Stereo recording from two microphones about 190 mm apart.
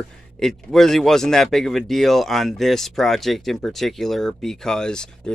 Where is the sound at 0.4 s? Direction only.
Centre (ahead or behind).